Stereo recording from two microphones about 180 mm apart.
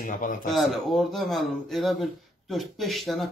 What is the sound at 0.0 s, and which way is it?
Speech, 50° left (ahead or behind).